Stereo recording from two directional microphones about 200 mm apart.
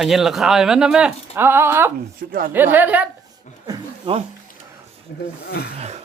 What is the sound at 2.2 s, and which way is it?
Speech, 50° right (ahead or behind).